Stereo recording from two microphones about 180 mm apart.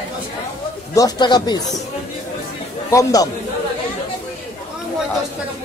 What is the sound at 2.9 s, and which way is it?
Speech, 20° left (ahead or behind).